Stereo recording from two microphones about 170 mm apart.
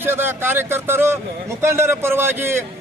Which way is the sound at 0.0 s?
10° right (ahead or behind).